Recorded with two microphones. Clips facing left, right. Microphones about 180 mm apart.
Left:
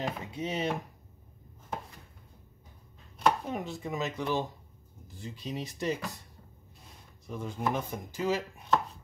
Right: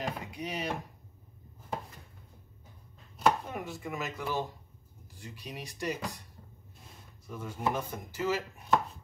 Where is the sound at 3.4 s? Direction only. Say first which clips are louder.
Left 3 dB; 20° left (ahead or behind).